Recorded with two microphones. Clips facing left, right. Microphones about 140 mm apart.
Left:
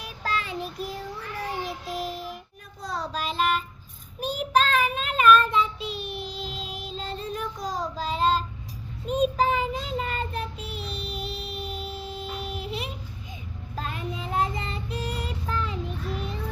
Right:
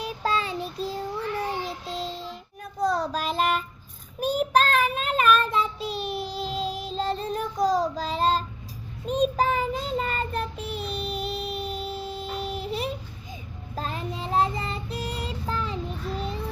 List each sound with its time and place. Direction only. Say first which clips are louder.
0.0 s child singing: right 4 dB; 30° right (ahead or behind)
2.9 s child singing: right 4 dB; 45° right (ahead or behind)
9.0 s child singing: even; 5° left (ahead or behind)
9.3 s child singing: even; 45° right (ahead or behind)
10.6 s music: right 4 dB; 45° right (ahead or behind)
13.7 s child singing: right 1 dB; 35° right (ahead or behind)